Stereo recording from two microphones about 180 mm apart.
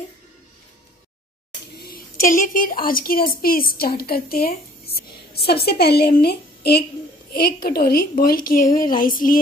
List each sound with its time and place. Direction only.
1.8 s a woman's voice: 55° left (ahead or behind)